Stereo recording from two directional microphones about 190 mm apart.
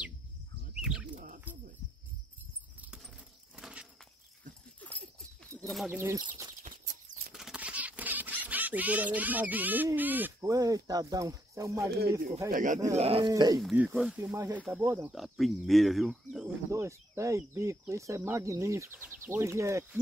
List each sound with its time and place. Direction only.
0.7 s bird: 5° right (ahead or behind)
1.1 s wild animals: 45° right (ahead or behind)
3.5 s a sound: 5° right (ahead or behind)
4.7 s dog: 10° left (ahead or behind)
5.5 s bird: centre (ahead or behind)
5.9 s speech: 15° right (ahead or behind)
7.3 s speech: 5° right (ahead or behind)
12.4 s speech: 45° right (ahead or behind)
12.9 s speech: 30° right (ahead or behind)
13.3 s speech: 20° right (ahead or behind)
13.6 s speech: 5° right (ahead or behind)
16.7 s speech: 15° right (ahead or behind)